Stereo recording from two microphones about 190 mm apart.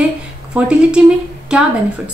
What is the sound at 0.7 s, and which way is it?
Speech, 5° right (ahead or behind).